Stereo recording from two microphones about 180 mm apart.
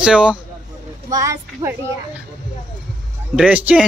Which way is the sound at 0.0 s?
5° right (ahead or behind).